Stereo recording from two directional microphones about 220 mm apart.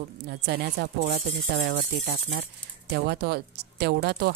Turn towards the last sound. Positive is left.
turn(degrees=-45)  # may be behind; listen again after turning